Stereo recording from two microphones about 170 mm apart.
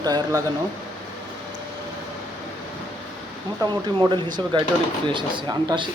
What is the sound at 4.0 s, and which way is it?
Speech, 25° right (ahead or behind).